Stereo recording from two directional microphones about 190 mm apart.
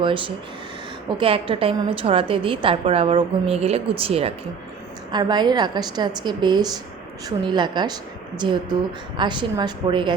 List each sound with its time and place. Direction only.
0.0 s a woman's voice: 25° right (ahead or behind)